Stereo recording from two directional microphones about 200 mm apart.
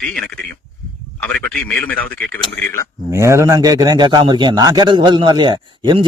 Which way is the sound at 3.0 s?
15° right (ahead or behind).